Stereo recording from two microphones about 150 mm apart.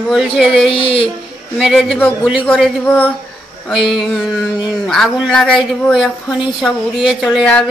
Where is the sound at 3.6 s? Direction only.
Centre (ahead or behind).